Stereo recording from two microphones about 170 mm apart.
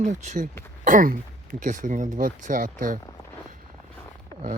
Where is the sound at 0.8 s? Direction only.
50° right (ahead or behind).